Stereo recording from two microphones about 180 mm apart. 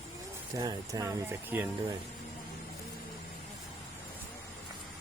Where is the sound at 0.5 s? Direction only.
20° right (ahead or behind).